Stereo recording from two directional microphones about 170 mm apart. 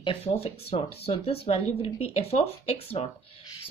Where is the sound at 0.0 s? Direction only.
35° left (ahead or behind).